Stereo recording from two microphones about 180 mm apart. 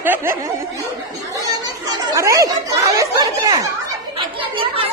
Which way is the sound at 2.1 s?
15° right (ahead or behind).